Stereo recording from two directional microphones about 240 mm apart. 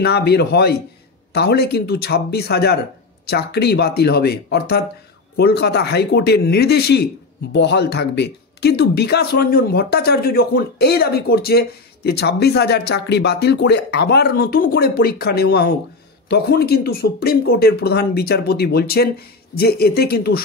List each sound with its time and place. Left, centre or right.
0.0 s speech: left